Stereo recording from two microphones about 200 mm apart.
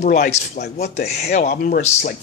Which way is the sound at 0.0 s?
40° left (ahead or behind).